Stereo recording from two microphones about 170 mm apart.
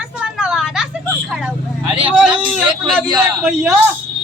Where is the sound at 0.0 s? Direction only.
5° right (ahead or behind).